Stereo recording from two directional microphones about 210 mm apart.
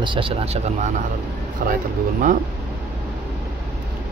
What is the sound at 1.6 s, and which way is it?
Speech, 40° right (ahead or behind).